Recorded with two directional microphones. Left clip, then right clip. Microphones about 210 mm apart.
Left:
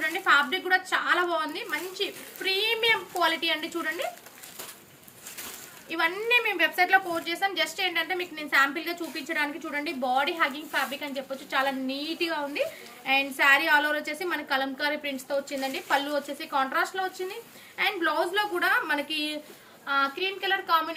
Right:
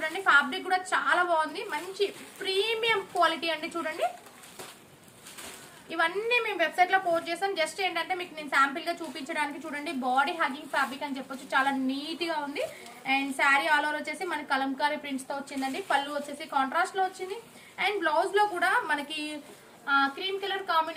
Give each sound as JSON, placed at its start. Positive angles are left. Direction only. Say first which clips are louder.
{"t": 0.0, "sound": "a woman's voice", "louder": "left 1 dB", "side_deg": -15}
{"t": 5.9, "sound": "a woman's voice", "louder": "left 2 dB", "side_deg": -15}
{"t": 16.4, "sound": "a woman's voice", "louder": "right 1 dB", "side_deg": -15}